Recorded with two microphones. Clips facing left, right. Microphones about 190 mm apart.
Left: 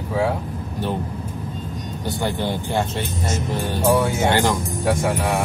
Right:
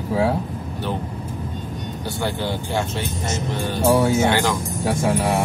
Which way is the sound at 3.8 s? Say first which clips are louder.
Right 2 dB; 25° right (ahead or behind).